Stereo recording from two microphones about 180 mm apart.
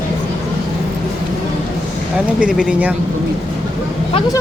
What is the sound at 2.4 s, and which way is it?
Speech, 5° right (ahead or behind).